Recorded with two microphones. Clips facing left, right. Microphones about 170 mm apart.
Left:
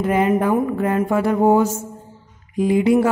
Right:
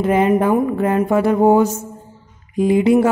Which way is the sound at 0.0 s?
25° right (ahead or behind).